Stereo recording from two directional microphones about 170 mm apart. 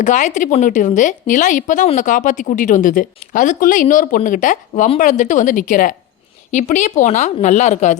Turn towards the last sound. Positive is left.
turn(degrees=45)  # may be behind; listen again after turning